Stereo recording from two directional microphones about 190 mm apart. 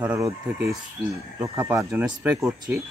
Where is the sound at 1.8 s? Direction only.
Centre (ahead or behind).